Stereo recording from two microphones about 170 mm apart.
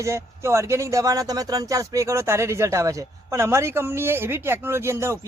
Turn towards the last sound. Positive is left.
turn(degrees=-15)  # may be behind; listen again after turning